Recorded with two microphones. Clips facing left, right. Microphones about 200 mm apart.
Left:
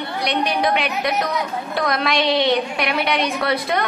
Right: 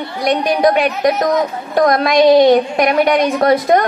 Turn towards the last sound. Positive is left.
turn(degrees=-45)  # may be behind; listen again after turning